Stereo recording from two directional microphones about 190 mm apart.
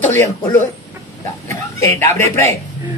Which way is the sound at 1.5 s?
15° left (ahead or behind).